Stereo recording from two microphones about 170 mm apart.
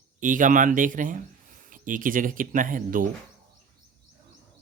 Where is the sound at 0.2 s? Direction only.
50° right (ahead or behind).